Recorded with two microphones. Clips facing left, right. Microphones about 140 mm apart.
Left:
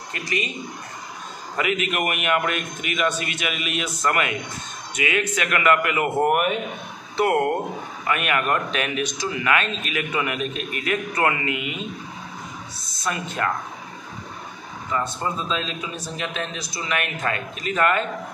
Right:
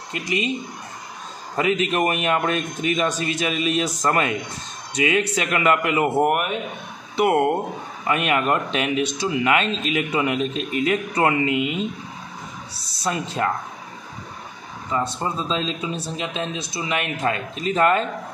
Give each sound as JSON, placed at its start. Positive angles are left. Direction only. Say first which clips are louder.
{"t": 0.1, "sound": "speech", "louder": "right 3 dB", "side_deg": -20}
{"t": 1.6, "sound": "a man's voice", "louder": "right 4 dB", "side_deg": -30}
{"t": 6.1, "sound": "a man's voice", "louder": "left 1 dB", "side_deg": -5}
{"t": 7.2, "sound": "speech", "louder": "right 2 dB", "side_deg": -20}
{"t": 12.8, "sound": "speech", "louder": "right 3 dB", "side_deg": -30}
{"t": 14.9, "sound": "speech", "louder": "right 1 dB", "side_deg": -25}